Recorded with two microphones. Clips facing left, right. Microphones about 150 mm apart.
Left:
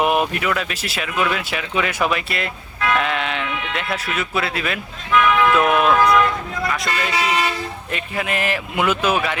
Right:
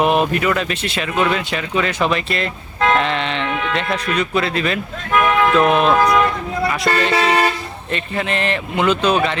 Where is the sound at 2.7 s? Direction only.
40° right (ahead or behind).